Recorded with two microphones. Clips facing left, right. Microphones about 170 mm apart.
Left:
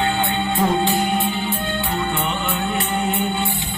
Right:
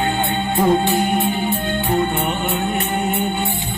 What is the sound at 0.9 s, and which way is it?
Music, 15° right (ahead or behind).